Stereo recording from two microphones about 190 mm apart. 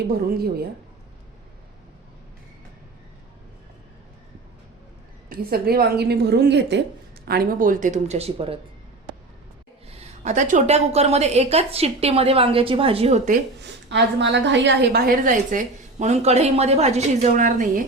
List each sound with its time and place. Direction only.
0.3 s a woman's voice: 55° right (ahead or behind)
5.3 s a woman's voice: 50° right (ahead or behind)
7.3 s a woman's voice: 50° right (ahead or behind); by 8.5 s 30° right (ahead or behind)
9.9 s a woman's voice: 35° right (ahead or behind)
13.9 s a woman's voice: 65° right (ahead or behind); by 17.8 s 45° right (ahead or behind)